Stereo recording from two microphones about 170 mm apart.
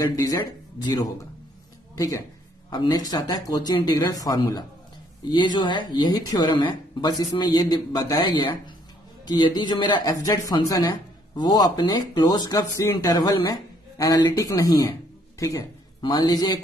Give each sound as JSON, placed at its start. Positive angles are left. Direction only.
{"t": 0.0, "sound": "a man's voice", "side_deg": 20}